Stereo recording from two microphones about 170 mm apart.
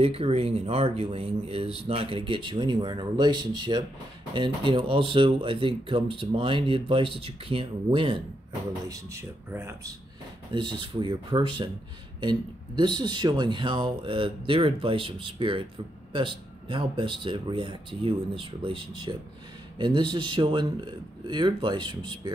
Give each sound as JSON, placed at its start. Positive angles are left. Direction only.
{"t": 0.0, "sound": "speech", "side_deg": -35}
{"t": 8.8, "sound": "speech", "side_deg": -20}
{"t": 10.5, "sound": "speech", "side_deg": -30}